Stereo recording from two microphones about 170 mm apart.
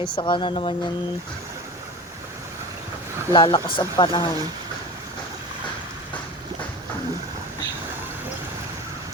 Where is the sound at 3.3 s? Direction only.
25° left (ahead or behind).